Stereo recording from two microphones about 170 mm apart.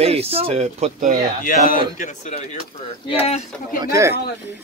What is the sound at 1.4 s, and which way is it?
Speech, 55° left (ahead or behind).